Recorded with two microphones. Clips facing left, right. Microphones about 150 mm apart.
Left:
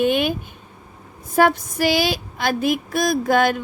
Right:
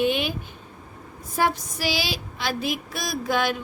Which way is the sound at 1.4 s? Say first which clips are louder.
Left 7 dB; 55° left (ahead or behind).